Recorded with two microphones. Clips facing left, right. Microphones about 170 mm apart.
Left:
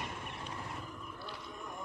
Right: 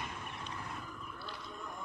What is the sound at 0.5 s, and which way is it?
Roar, 20° left (ahead or behind).